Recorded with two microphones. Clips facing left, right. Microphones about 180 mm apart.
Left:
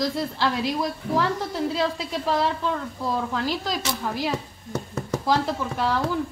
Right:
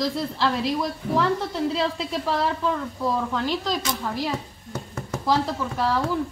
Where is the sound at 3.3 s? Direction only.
5° left (ahead or behind).